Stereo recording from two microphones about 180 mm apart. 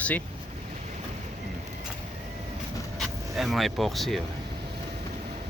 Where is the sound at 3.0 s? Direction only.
Centre (ahead or behind).